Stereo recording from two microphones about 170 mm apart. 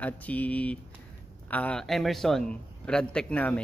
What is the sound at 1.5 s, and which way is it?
Speech, 5° left (ahead or behind).